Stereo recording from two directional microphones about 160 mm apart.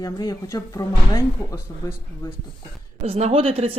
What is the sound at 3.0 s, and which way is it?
Speech, 40° right (ahead or behind).